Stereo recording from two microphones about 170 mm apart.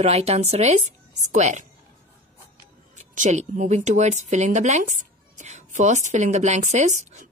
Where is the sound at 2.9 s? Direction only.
45° right (ahead or behind).